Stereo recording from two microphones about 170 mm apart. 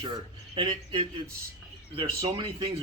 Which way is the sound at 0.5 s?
30° right (ahead or behind).